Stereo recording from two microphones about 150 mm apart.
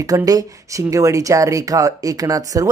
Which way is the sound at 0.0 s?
25° right (ahead or behind).